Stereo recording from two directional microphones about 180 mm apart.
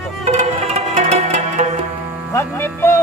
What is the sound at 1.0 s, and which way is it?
Music, 40° right (ahead or behind).